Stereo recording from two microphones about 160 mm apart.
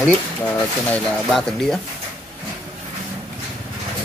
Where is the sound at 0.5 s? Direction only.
10° left (ahead or behind).